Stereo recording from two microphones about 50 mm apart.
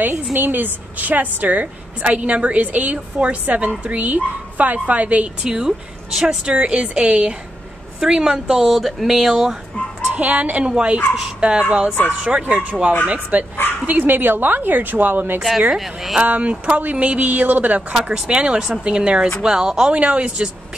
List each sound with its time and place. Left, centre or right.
0.0 s a woman's voice: right
5.4 s speech: centre
10.1 s a woman's voice: right
13.8 s a woman's voice: right
15.7 s speech: centre
16.2 s speech: right
17.9 s speech: centre